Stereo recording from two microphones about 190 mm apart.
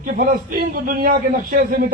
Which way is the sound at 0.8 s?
50° right (ahead or behind).